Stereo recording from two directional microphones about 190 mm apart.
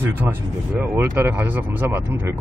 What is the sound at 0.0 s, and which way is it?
Speech, 10° right (ahead or behind).